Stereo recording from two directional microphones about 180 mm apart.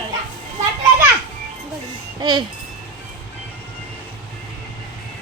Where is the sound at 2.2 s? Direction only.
25° right (ahead or behind).